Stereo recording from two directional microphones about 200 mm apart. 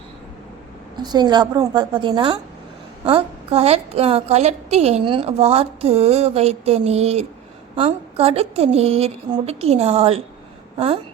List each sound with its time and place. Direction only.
0.9 s a woman's voice: 20° right (ahead or behind)